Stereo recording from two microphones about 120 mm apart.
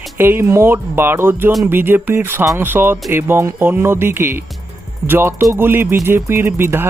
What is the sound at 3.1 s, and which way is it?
Music, 20° right (ahead or behind).